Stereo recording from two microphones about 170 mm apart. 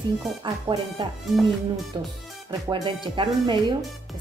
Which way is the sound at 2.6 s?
30° right (ahead or behind).